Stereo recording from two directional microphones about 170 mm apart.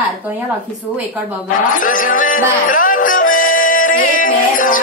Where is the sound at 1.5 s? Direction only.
55° left (ahead or behind).